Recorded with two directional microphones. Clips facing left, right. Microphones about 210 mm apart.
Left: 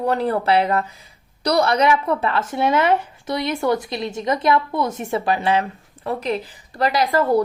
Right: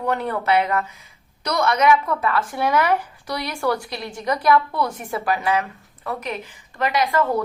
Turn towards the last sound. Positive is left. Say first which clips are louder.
# left 3 dB
turn(degrees=35)  # may be behind; listen again after turning